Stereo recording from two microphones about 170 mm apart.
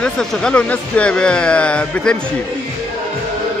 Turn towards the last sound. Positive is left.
turn(degrees=5)  # may be behind; listen again after turning